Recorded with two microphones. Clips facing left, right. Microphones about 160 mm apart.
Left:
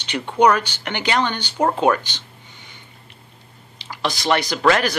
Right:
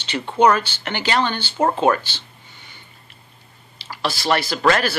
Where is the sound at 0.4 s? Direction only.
15° left (ahead or behind).